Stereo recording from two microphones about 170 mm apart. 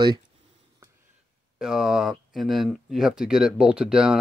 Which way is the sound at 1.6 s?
5° right (ahead or behind).